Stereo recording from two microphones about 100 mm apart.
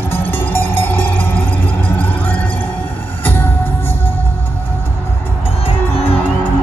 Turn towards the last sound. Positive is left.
turn(degrees=75)  # may be behind; listen again after turning